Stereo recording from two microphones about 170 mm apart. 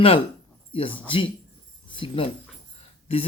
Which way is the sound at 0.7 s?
35° left (ahead or behind).